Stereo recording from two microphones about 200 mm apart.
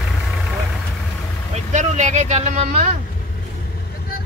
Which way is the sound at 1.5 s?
35° right (ahead or behind).